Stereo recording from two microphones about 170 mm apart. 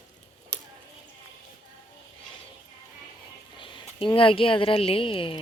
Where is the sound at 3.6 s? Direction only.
30° left (ahead or behind).